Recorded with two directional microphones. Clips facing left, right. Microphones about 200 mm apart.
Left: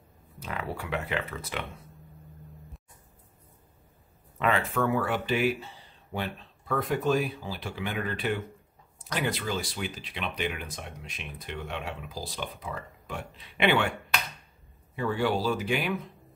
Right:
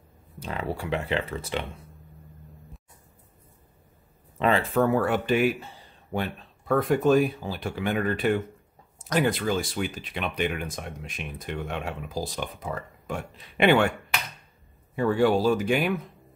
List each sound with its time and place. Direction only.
0.4 s speech: 30° right (ahead or behind)
4.4 s speech: 35° right (ahead or behind); by 5.5 s 50° right (ahead or behind)
6.7 s speech: 50° right (ahead or behind)
15.0 s speech: 45° right (ahead or behind)